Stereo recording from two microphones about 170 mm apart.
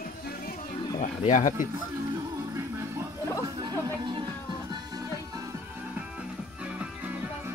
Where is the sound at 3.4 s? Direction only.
25° right (ahead or behind).